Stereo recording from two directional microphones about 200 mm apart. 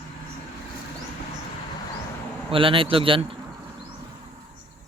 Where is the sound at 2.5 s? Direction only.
25° right (ahead or behind).